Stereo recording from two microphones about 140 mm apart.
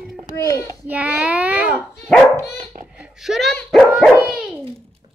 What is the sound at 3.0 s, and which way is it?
Speech, 5° right (ahead or behind).